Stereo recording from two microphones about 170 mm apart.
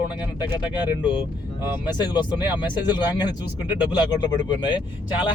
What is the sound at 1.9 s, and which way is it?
Speech, 25° left (ahead or behind).